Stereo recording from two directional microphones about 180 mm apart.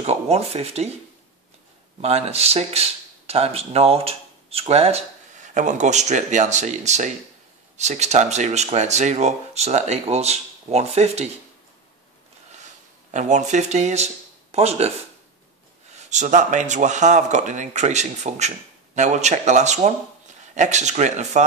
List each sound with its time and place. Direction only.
0.0 s speech: 35° right (ahead or behind)
2.0 s speech: 35° right (ahead or behind)
13.1 s speech: 40° right (ahead or behind)
15.9 s speech: 40° right (ahead or behind)